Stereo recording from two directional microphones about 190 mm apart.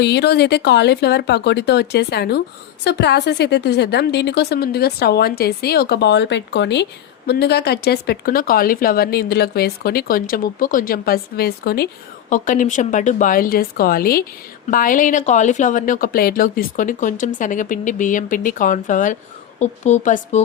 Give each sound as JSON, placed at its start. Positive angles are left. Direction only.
{"t": 0.0, "sound": "a woman's voice", "side_deg": 65}
{"t": 12.3, "sound": "speech", "side_deg": 45}